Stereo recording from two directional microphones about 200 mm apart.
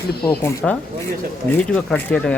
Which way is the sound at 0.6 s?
5° left (ahead or behind).